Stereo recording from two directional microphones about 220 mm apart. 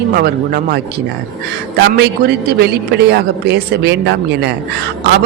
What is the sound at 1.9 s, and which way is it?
A woman's voice, 45° right (ahead or behind).